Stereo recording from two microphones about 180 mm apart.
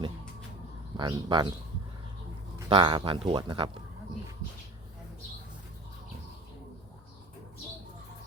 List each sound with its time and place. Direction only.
0.9 s speech: 25° right (ahead or behind)
2.6 s speech: 25° right (ahead or behind)